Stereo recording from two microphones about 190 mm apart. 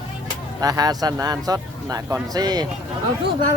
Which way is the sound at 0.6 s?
20° right (ahead or behind).